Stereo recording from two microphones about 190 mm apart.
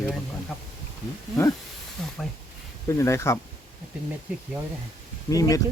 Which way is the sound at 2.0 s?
Centre (ahead or behind).